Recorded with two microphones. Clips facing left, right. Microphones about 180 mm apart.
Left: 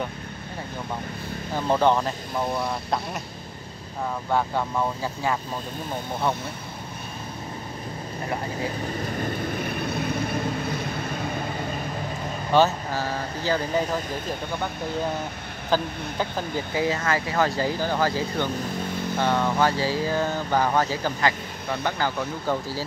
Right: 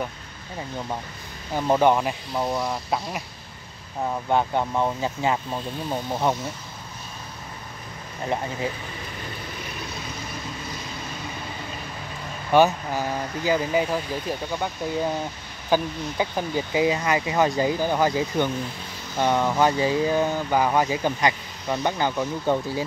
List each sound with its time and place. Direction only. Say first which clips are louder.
1.7 s speech: right 2 dB; 10° right (ahead or behind)
4.3 s speech: right 2 dB; 20° right (ahead or behind)
9.0 s vehicle: left 8 dB; 50° left (ahead or behind)
12.5 s speech: right 2 dB; 15° right (ahead or behind)
15.7 s speech: right 2 dB; 10° right (ahead or behind)